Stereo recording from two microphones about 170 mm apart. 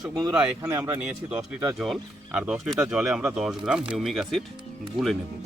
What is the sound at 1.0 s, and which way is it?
Speech, 5° right (ahead or behind).